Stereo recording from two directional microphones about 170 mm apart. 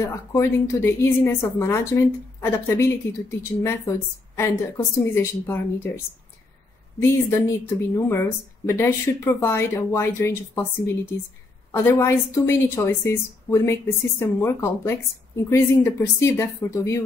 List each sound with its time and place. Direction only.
0.0 s speech: 15° left (ahead or behind)
7.0 s speech: 15° left (ahead or behind)